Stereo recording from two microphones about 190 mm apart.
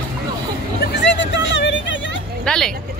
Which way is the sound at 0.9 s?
70° left (ahead or behind).